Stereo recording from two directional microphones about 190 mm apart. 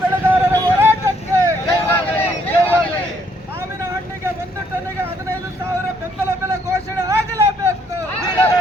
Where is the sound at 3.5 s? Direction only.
15° right (ahead or behind).